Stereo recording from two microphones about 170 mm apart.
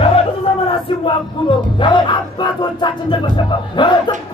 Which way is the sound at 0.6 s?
30° left (ahead or behind).